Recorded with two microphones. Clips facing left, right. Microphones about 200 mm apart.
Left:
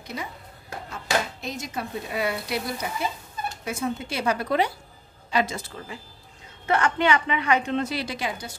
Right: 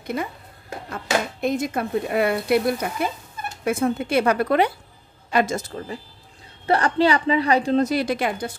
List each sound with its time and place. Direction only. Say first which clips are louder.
0.0 s speech: right 8 dB; 55° right (ahead or behind)
5.3 s a woman's voice: right 4 dB; 50° right (ahead or behind)